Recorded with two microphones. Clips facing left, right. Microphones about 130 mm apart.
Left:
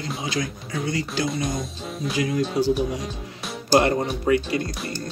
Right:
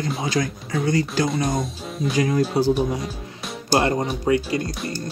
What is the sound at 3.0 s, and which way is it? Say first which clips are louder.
Music: right 1 dB; centre (ahead or behind).